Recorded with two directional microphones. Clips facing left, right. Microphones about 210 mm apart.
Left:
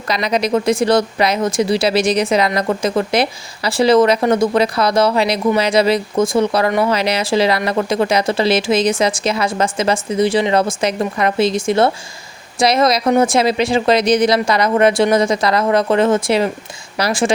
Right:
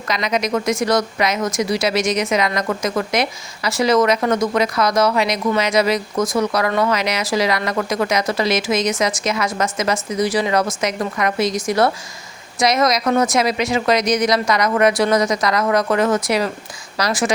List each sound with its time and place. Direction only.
0.1 s speech: 35° left (ahead or behind)